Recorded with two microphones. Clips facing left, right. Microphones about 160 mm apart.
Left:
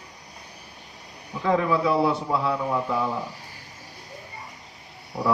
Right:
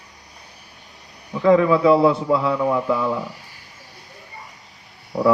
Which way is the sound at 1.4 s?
85° right.